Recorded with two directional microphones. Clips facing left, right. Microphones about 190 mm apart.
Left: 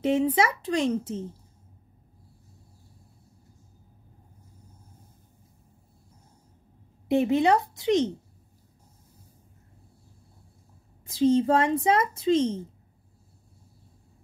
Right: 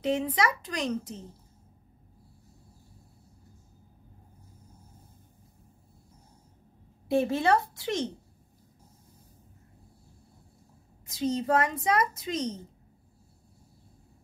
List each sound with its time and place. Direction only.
0.0 s a child's voice: 25° left (ahead or behind)
7.1 s a child's voice: 20° left (ahead or behind)
11.1 s a child's voice: 30° left (ahead or behind)